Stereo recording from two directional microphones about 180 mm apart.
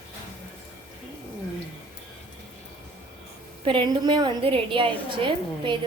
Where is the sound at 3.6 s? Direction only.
25° right (ahead or behind).